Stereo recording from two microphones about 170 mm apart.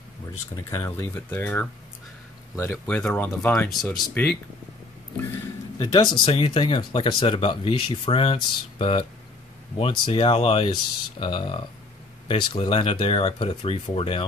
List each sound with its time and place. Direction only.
0.7 s speech: 15° left (ahead or behind)
5.8 s speech: 30° left (ahead or behind)